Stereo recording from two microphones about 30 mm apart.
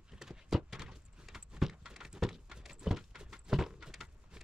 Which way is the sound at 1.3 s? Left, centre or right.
Centre.